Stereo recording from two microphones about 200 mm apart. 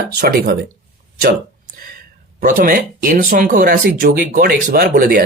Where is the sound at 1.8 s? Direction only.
50° right (ahead or behind).